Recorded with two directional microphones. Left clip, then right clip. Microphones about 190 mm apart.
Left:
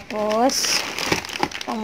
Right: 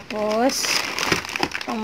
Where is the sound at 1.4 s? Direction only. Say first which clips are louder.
Even; 20° right (ahead or behind).